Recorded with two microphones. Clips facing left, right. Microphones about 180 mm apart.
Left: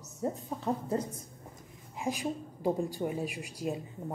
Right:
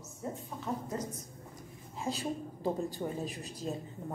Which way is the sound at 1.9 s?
15° left (ahead or behind).